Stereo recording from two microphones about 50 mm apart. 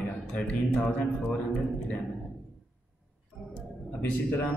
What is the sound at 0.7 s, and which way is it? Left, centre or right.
Speech, left.